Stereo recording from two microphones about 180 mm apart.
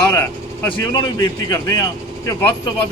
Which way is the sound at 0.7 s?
25° left (ahead or behind).